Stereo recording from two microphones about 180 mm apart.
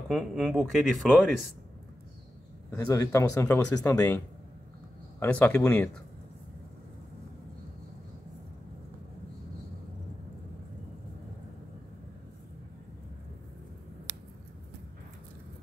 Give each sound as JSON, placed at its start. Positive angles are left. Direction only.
{"t": 0.1, "sound": "speech", "side_deg": -5}
{"t": 2.7, "sound": "speech", "side_deg": 15}
{"t": 5.2, "sound": "speech", "side_deg": 10}